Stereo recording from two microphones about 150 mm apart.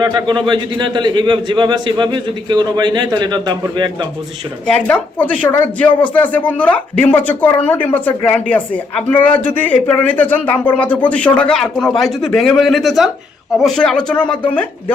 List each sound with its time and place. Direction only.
0.0 s a man's voice: 30° right (ahead or behind)
4.6 s speech: 10° left (ahead or behind)